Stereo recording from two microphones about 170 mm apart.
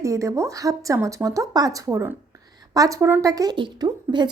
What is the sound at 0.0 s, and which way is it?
Speech, 20° right (ahead or behind).